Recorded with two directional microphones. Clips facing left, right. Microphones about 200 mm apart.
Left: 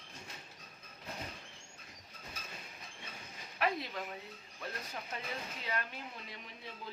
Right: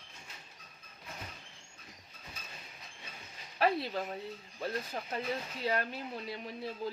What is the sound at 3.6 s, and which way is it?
Speech, 35° right (ahead or behind).